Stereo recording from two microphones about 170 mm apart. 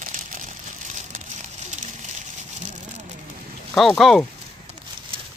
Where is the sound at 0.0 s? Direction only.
50° right (ahead or behind).